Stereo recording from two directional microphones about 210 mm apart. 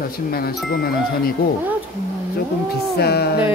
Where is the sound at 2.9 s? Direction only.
50° left (ahead or behind).